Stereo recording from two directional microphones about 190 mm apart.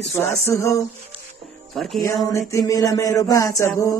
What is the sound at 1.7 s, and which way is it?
Speech, centre (ahead or behind).